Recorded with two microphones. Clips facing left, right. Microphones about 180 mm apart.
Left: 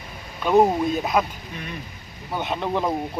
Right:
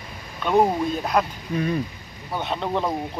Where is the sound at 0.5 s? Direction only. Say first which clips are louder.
Left 2 dB; 5° left (ahead or behind).